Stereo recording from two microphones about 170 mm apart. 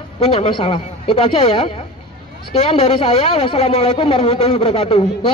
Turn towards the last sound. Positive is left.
turn(degrees=35)  # may be behind; listen again after turning